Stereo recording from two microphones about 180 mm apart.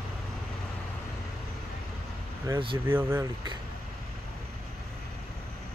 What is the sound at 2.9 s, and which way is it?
Speech, 10° right (ahead or behind).